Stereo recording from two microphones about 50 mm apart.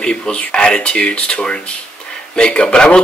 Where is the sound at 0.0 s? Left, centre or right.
Centre.